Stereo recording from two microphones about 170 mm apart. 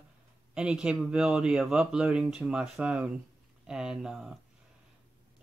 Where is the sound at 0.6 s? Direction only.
5° right (ahead or behind).